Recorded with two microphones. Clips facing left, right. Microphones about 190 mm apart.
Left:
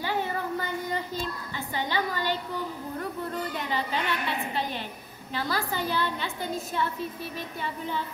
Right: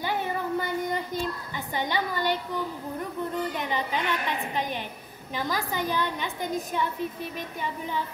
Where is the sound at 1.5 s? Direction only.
15° right (ahead or behind).